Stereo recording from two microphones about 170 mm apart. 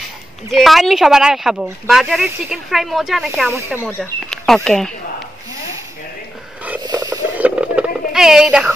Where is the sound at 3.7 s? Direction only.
15° left (ahead or behind).